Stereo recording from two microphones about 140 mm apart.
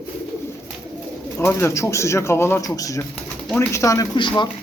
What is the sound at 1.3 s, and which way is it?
Speech, 20° left (ahead or behind).